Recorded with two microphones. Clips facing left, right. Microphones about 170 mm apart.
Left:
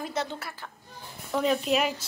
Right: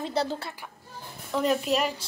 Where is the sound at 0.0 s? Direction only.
35° right (ahead or behind).